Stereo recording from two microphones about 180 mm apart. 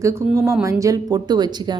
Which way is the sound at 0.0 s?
15° right (ahead or behind).